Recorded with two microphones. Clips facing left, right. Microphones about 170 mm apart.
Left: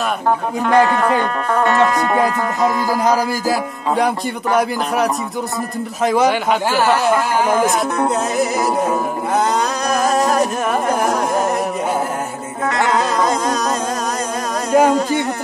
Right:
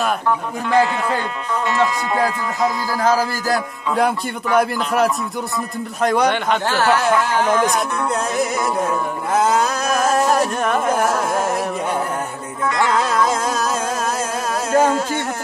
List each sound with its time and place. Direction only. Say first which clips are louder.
0.7 s speech: left 3 dB; 55° left (ahead or behind)
2.3 s music: left 3 dB; 50° left (ahead or behind)
3.0 s a sound: right 2 dB; 15° left (ahead or behind)
4.6 s carnatic music: right 1 dB; centre (ahead or behind)
9.8 s carnatic music: left 2 dB; centre (ahead or behind)
14.7 s humming: left 3 dB; 15° left (ahead or behind)